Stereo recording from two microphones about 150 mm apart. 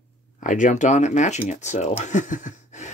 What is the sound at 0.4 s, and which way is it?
Speech, 60° left (ahead or behind).